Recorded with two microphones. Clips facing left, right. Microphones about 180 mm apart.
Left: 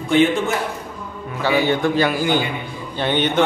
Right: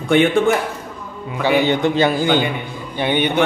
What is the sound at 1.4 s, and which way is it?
Speech, 20° right (ahead or behind).